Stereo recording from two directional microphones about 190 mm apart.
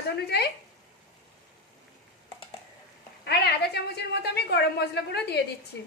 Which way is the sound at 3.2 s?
60° left (ahead or behind).